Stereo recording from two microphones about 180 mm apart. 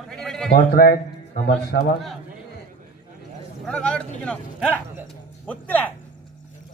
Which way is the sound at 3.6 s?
5° left (ahead or behind).